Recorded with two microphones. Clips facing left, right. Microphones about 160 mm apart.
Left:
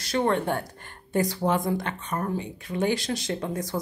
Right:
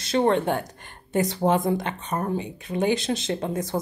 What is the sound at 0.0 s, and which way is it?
A woman's voice, 25° right (ahead or behind).